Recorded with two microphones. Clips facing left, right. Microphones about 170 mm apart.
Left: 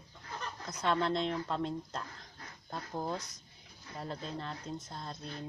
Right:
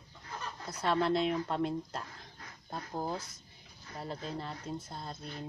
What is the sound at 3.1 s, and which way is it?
Speech, 25° right (ahead or behind).